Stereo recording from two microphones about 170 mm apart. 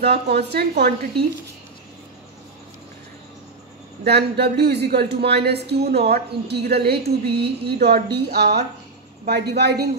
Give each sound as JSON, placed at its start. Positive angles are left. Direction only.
{"t": 0.0, "sound": "speech", "side_deg": -75}
{"t": 4.0, "sound": "speech", "side_deg": -70}